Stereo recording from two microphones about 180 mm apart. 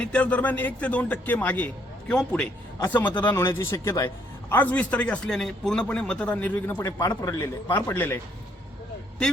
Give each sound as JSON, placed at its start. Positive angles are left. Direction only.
{"t": 0.0, "sound": "a man's voice", "side_deg": 5}